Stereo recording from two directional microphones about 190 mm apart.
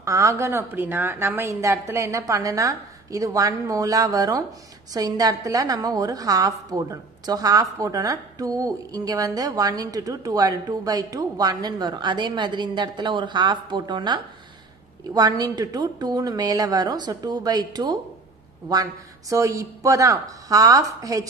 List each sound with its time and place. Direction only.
0.0 s a woman's voice: 15° right (ahead or behind)